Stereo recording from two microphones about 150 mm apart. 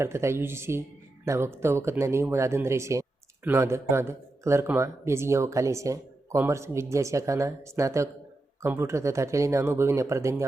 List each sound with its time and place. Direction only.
0.0 s speech: 20° right (ahead or behind)